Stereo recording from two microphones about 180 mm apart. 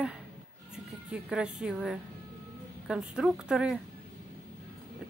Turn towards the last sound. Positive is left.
turn(degrees=-5)  # may be behind; listen again after turning